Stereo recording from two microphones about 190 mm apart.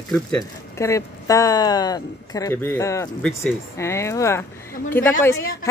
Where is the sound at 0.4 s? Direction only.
15° left (ahead or behind).